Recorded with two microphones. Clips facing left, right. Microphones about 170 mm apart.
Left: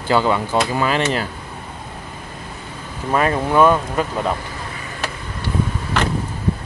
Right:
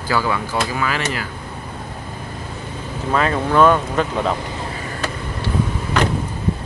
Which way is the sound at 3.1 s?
15° left (ahead or behind).